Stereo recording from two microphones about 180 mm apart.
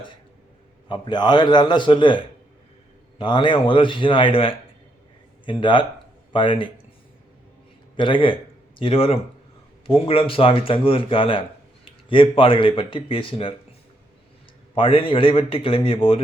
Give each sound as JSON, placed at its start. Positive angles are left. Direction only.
{"t": 0.9, "sound": "speech", "side_deg": 25}
{"t": 7.9, "sound": "speech", "side_deg": 25}
{"t": 14.8, "sound": "speech", "side_deg": 30}